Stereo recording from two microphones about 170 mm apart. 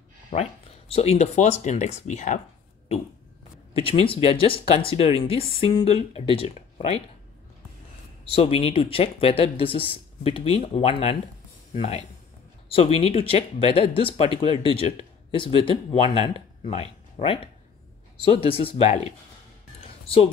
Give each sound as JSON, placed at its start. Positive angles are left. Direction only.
{"t": 0.3, "sound": "speech", "side_deg": 35}
{"t": 3.7, "sound": "speech", "side_deg": 35}
{"t": 8.3, "sound": "speech", "side_deg": 35}